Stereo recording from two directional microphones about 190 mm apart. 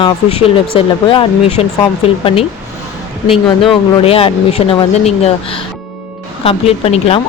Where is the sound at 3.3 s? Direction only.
30° left (ahead or behind).